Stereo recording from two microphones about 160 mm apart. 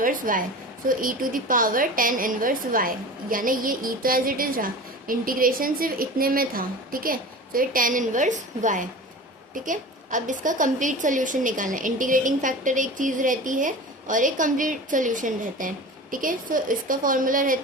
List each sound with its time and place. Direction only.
0.0 s a woman's voice: 60° right (ahead or behind)